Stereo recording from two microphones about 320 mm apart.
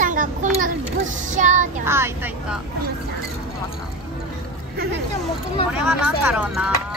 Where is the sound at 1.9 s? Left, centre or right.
Centre.